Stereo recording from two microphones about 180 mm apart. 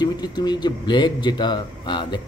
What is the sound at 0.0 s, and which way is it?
A man's voice, 20° left (ahead or behind).